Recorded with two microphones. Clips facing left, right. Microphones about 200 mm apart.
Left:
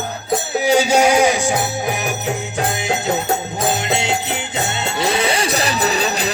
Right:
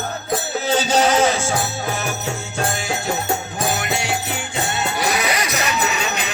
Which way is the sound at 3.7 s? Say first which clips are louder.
Left 3 dB; 25° left (ahead or behind).